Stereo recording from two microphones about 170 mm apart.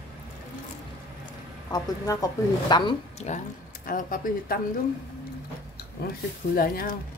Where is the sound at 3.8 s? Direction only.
55° left (ahead or behind).